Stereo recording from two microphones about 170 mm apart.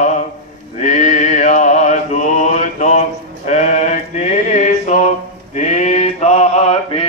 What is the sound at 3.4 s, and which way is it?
Music, 45° left (ahead or behind).